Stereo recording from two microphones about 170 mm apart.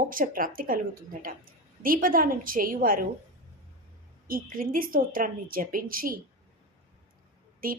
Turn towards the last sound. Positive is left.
turn(degrees=-55)  # may be behind; listen again after turning